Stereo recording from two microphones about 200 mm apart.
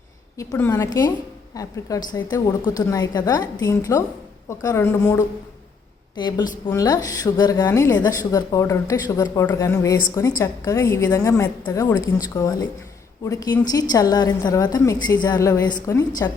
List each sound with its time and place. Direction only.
0.3 s a woman's voice: 15° left (ahead or behind)